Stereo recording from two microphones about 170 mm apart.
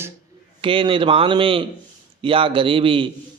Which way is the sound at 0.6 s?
30° right (ahead or behind).